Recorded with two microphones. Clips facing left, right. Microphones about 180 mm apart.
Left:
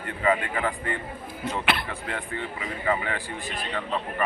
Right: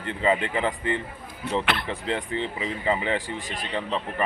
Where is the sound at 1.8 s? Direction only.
25° right (ahead or behind).